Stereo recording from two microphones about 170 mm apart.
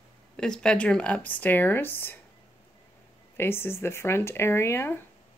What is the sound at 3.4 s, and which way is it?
A woman's voice, 15° left (ahead or behind).